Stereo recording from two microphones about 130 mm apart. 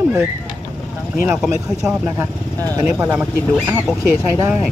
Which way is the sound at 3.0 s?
20° right (ahead or behind).